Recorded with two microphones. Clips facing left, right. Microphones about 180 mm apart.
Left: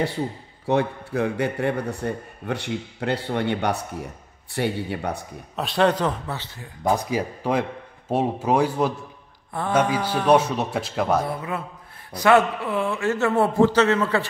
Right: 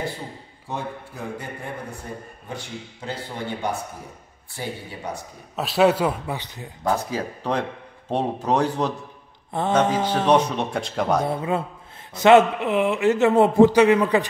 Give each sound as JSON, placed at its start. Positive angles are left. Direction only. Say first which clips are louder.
{"t": 0.7, "sound": "a man's voice", "louder": "left 9 dB", "side_deg": 75}
{"t": 5.6, "sound": "a man's voice", "louder": "right 2 dB", "side_deg": -5}
{"t": 6.8, "sound": "speech", "louder": "left 2 dB", "side_deg": 15}
{"t": 9.5, "sound": "a man's voice", "louder": "right 1 dB", "side_deg": -25}
{"t": 10.2, "sound": "speech", "louder": "left 2 dB", "side_deg": 5}
{"t": 11.2, "sound": "a man's voice", "louder": "right 4 dB", "side_deg": -25}